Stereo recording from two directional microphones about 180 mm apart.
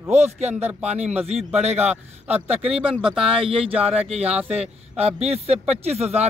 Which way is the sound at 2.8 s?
5° right (ahead or behind).